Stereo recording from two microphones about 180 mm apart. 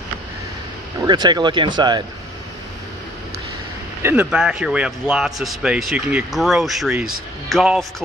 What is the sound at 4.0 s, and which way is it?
A man's voice, 10° right (ahead or behind).